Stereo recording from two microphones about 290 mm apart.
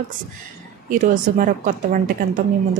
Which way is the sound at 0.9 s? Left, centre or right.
Right.